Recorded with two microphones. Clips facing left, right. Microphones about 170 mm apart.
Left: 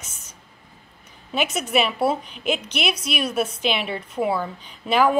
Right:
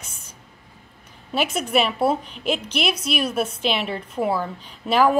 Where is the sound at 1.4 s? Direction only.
30° right (ahead or behind).